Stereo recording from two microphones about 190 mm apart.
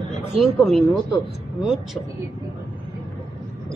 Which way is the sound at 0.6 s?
Centre (ahead or behind).